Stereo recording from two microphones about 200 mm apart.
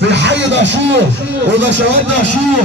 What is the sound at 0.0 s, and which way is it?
Music, 60° right (ahead or behind).